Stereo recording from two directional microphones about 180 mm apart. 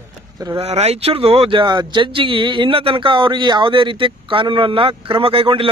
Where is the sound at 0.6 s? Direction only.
35° right (ahead or behind).